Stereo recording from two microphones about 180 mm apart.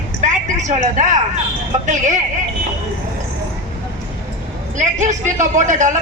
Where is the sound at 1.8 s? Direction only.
40° right (ahead or behind).